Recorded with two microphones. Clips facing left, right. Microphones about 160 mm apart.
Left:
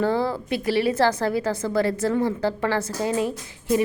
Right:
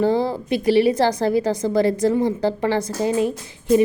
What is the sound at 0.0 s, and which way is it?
A woman's voice, 15° right (ahead or behind).